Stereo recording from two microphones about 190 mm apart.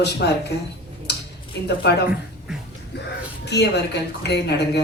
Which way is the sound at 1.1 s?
60° left (ahead or behind).